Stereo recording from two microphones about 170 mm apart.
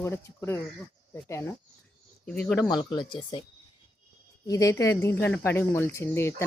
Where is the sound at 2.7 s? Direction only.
25° left (ahead or behind).